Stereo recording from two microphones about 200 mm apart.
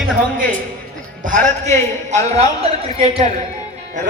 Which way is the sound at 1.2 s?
40° right (ahead or behind).